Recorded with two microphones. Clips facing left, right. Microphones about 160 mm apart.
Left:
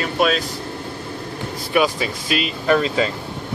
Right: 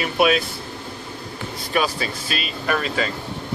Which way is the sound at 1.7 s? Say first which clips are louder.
Left 4 dB; 15° left (ahead or behind).